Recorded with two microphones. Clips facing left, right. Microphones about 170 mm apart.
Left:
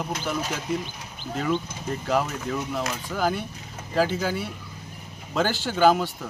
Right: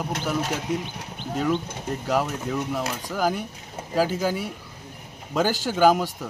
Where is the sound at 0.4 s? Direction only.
60° right (ahead or behind).